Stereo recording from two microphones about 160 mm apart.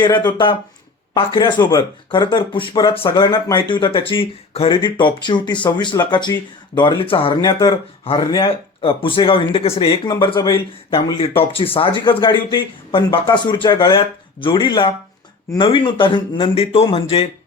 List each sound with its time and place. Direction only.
0.2 s speech: 30° left (ahead or behind)